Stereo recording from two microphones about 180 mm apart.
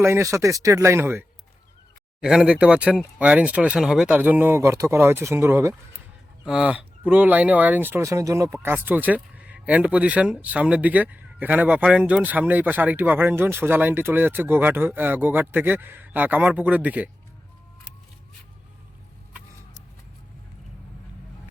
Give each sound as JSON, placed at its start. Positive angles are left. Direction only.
{"t": 0.0, "sound": "speech", "side_deg": -15}
{"t": 2.2, "sound": "speech", "side_deg": -5}